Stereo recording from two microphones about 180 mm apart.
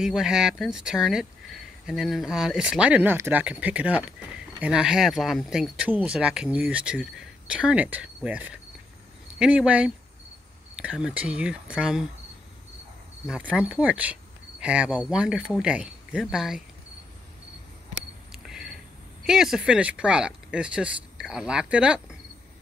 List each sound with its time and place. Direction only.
0.0 s speech: 5° right (ahead or behind)
13.3 s speech: 5° right (ahead or behind)
18.3 s single-lens reflex camera: 5° right (ahead or behind)
19.2 s speech: 5° right (ahead or behind)